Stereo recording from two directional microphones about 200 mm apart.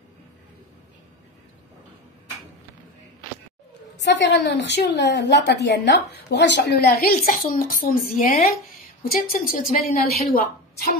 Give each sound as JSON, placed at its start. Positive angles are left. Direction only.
{"t": 4.0, "sound": "a woman's voice", "side_deg": 60}